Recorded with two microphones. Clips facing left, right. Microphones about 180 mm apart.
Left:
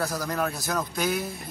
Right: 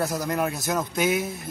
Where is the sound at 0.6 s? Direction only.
20° right (ahead or behind).